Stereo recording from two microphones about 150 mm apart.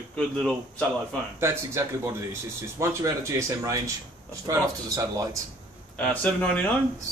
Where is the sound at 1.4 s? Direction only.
20° right (ahead or behind).